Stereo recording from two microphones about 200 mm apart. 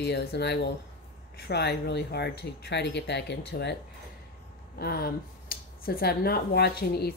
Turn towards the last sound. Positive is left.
turn(degrees=50)  # may be behind; listen again after turning